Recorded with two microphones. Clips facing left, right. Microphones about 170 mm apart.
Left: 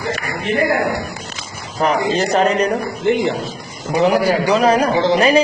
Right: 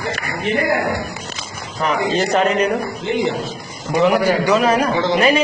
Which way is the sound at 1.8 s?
40° left (ahead or behind).